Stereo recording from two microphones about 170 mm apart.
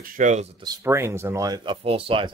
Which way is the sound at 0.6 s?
20° right (ahead or behind).